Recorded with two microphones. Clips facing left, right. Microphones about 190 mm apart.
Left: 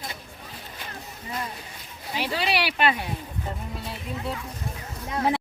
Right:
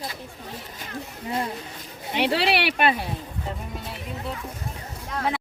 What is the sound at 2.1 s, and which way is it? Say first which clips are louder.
Speech: right 4 dB; 65° right (ahead or behind).